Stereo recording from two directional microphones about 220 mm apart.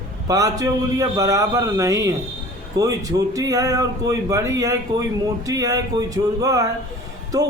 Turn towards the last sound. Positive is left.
turn(degrees=-15)  # may be behind; listen again after turning